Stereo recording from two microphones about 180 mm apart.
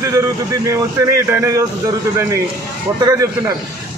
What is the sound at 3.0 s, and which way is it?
Speech, 20° right (ahead or behind).